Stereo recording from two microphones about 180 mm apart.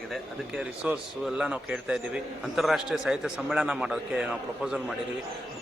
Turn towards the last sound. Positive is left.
turn(degrees=-5)  # may be behind; listen again after turning